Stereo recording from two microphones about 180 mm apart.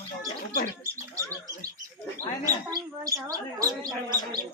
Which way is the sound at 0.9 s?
15° right (ahead or behind).